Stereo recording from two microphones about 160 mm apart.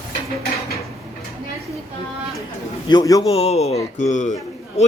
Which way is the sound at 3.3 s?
40° left (ahead or behind).